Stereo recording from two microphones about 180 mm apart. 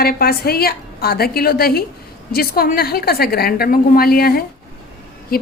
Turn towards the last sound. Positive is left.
turn(degrees=55)  # may be behind; listen again after turning